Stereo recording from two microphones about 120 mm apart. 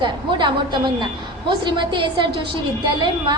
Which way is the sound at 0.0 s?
40° right (ahead or behind).